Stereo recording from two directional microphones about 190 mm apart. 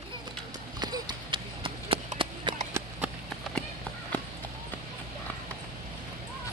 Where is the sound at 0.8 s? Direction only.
20° right (ahead or behind).